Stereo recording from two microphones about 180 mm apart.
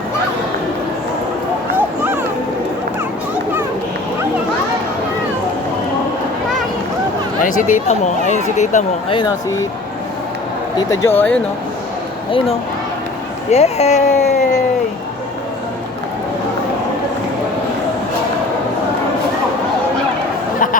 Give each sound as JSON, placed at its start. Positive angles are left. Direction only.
{"t": 7.4, "sound": "speech", "side_deg": 40}
{"t": 9.1, "sound": "speech", "side_deg": 20}
{"t": 10.8, "sound": "speech", "side_deg": 15}
{"t": 13.5, "sound": "speech", "side_deg": 35}